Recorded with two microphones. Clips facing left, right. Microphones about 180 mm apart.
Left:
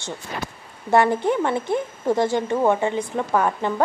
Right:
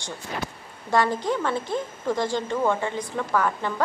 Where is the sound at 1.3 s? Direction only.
20° left (ahead or behind).